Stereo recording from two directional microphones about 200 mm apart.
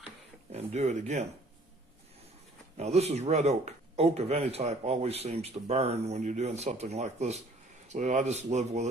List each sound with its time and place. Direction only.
0.5 s speech: 35° right (ahead or behind)
2.8 s speech: 30° right (ahead or behind)